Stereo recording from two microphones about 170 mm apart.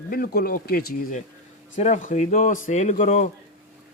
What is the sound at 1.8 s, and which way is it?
Speech, 45° left (ahead or behind).